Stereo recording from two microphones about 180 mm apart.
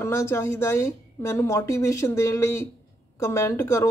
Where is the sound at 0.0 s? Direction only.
15° left (ahead or behind).